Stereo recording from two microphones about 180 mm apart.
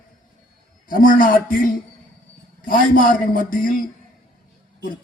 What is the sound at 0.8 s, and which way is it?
Speech, 50° left (ahead or behind).